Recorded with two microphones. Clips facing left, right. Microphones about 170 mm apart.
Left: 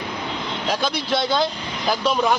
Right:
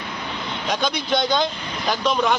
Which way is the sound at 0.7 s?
5° left (ahead or behind).